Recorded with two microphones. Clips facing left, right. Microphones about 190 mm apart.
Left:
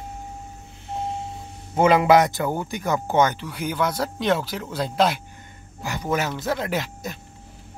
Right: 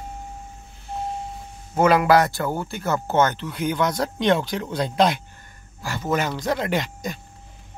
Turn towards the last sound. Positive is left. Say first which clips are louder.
# right 2 dB
turn(degrees=5)  # may be behind; listen again after turning